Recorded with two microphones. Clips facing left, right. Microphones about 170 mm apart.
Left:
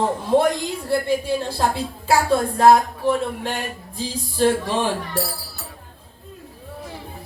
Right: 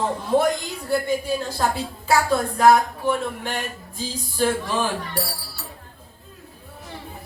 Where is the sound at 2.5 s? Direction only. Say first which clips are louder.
Left 1 dB; 30° left (ahead or behind).